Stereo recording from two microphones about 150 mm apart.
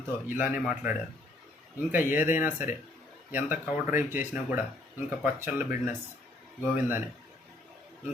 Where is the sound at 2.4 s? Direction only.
55° left (ahead or behind).